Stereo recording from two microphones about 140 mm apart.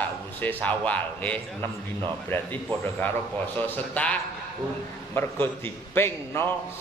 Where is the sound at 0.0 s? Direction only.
10° left (ahead or behind).